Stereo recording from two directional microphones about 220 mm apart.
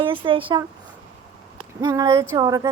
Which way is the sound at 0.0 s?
25° right (ahead or behind).